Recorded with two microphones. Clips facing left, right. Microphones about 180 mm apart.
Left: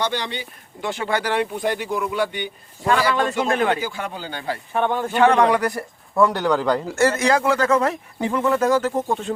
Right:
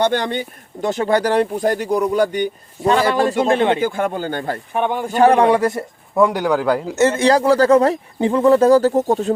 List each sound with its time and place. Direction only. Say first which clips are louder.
0.0 s speech: right 7 dB; 50° right (ahead or behind)
3.2 s speech: right 5 dB; 30° right (ahead or behind)
3.8 s speech: right 9 dB; 50° right (ahead or behind)
4.7 s speech: right 1 dB; 15° right (ahead or behind)
5.1 s a man's voice: right 4 dB; 35° right (ahead or behind)
6.2 s speech: right 2 dB; 10° right (ahead or behind)
6.9 s speech: right 5 dB; 20° right (ahead or behind); by 9.3 s 40° right (ahead or behind)